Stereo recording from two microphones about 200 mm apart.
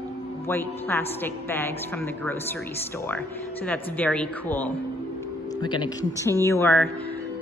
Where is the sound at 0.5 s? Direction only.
10° left (ahead or behind).